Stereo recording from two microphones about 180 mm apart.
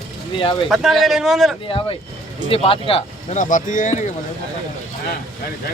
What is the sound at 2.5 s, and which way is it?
Speech, 30° left (ahead or behind).